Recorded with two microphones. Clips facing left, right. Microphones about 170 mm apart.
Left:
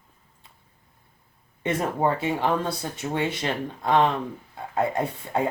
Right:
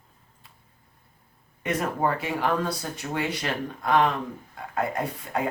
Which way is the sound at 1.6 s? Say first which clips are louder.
Left 2 dB; 25° left (ahead or behind).